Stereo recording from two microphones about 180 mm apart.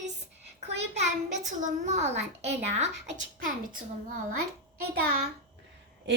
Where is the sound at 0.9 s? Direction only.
40° right (ahead or behind).